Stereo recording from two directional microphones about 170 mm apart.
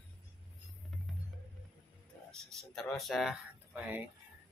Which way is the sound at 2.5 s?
Centre (ahead or behind).